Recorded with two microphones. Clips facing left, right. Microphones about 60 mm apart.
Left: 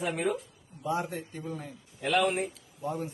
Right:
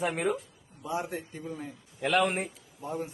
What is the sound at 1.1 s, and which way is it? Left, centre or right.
Speech, right.